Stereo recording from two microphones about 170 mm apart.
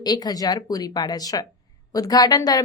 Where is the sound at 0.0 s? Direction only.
25° left (ahead or behind).